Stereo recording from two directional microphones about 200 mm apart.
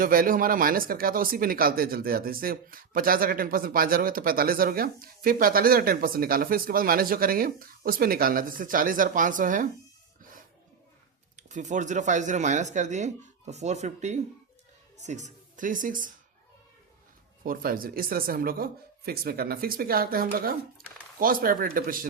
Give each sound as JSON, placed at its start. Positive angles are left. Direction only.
{"t": 0.0, "sound": "speech", "side_deg": -45}
{"t": 11.3, "sound": "speech", "side_deg": -35}
{"t": 17.4, "sound": "speech", "side_deg": -45}